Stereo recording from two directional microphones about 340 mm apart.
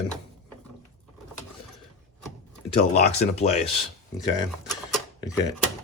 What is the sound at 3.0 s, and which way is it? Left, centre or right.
Speech, centre.